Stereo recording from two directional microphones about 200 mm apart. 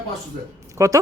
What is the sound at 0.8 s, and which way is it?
Speech, 15° right (ahead or behind).